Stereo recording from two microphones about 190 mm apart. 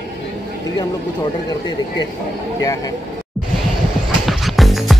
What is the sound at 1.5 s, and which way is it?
Speech, 25° left (ahead or behind).